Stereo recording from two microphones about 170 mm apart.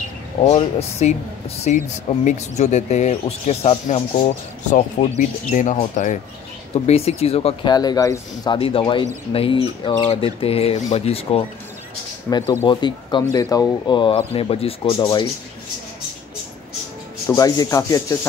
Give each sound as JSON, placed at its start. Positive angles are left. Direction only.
{"t": 0.5, "sound": "speech", "side_deg": 40}
{"t": 6.7, "sound": "speech", "side_deg": 35}
{"t": 7.7, "sound": "speech", "side_deg": 25}
{"t": 8.5, "sound": "speech", "side_deg": 35}
{"t": 12.3, "sound": "speech", "side_deg": 25}
{"t": 17.3, "sound": "speech", "side_deg": 20}